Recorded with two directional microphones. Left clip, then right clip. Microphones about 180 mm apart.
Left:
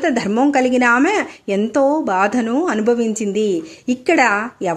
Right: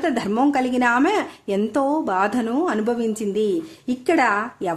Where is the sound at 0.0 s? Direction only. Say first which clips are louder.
Left 4 dB; 15° left (ahead or behind).